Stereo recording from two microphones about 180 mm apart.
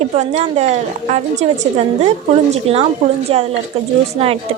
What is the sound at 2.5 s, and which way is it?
A woman's voice, 35° right (ahead or behind).